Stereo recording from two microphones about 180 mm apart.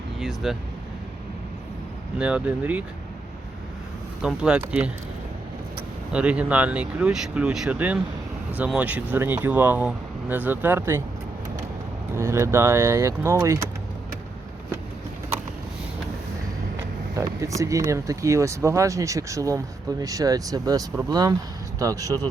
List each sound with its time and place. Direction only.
0.2 s speech: centre (ahead or behind)
2.1 s speech: 5° right (ahead or behind)
4.2 s speech: 5° right (ahead or behind)
6.1 s speech: 5° right (ahead or behind)
12.1 s speech: 15° right (ahead or behind)
17.2 s speech: 15° right (ahead or behind)